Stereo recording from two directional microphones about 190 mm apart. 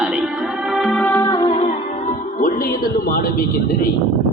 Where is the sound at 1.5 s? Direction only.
35° left (ahead or behind); by 3.7 s 50° left (ahead or behind).